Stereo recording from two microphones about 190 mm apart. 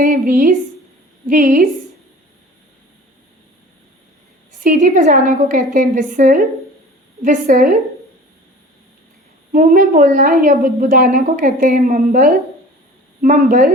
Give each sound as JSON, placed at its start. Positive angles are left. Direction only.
{"t": 0.0, "sound": "a woman's voice", "side_deg": -45}
{"t": 4.6, "sound": "a woman's voice", "side_deg": -45}
{"t": 9.5, "sound": "a woman's voice", "side_deg": -45}